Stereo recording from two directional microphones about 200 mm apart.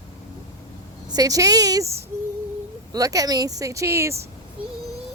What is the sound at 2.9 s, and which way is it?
Speech, 15° right (ahead or behind).